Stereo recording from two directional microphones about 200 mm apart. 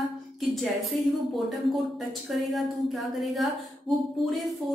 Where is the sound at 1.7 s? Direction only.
Centre (ahead or behind).